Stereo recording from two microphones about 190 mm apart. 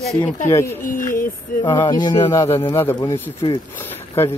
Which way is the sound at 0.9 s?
45° left (ahead or behind).